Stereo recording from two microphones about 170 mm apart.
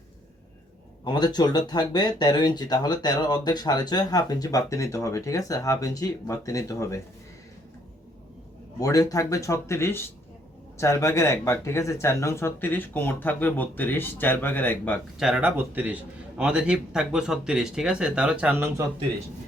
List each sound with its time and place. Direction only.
1.0 s speech: 25° left (ahead or behind)
8.8 s speech: 20° left (ahead or behind)
15.2 s speech: 5° right (ahead or behind)